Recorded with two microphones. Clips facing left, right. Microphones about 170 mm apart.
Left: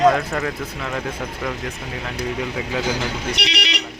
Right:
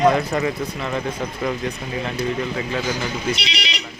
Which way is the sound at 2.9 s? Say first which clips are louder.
Right 1 dB; 75° left (ahead or behind).